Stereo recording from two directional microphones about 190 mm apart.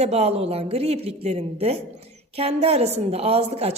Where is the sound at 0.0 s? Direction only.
35° right (ahead or behind).